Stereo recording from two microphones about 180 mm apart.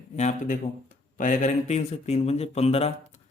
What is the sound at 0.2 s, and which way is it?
Speech, 45° left (ahead or behind).